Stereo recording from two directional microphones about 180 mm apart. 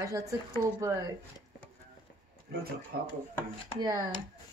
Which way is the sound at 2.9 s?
60° right (ahead or behind).